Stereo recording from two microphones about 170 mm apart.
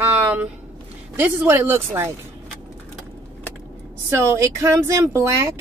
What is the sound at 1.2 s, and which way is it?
Speech, 15° right (ahead or behind).